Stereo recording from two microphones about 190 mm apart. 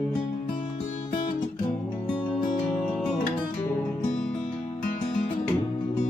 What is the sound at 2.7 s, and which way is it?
Music, centre (ahead or behind).